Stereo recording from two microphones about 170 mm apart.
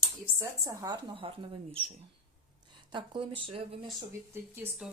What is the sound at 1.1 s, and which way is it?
Speech, 30° right (ahead or behind).